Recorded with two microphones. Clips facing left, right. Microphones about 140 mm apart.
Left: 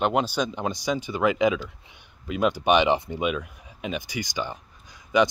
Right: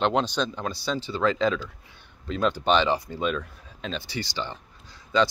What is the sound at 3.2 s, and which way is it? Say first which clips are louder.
Speech: left 1 dB; 10° left (ahead or behind).